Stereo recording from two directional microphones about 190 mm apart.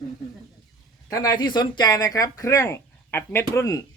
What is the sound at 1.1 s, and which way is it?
Speech, 20° left (ahead or behind).